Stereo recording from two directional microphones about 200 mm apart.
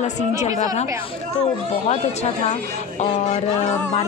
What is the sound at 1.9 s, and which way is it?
Speech, 35° left (ahead or behind).